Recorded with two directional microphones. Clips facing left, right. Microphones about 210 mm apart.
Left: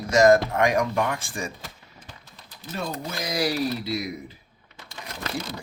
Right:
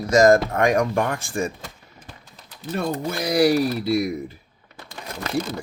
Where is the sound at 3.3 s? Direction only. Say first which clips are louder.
Right 7 dB; 50° right (ahead or behind).